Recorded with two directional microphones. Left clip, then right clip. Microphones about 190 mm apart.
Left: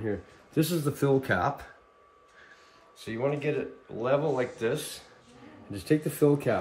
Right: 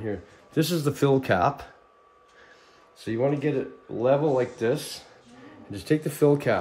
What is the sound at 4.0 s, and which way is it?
Speech, 45° right (ahead or behind).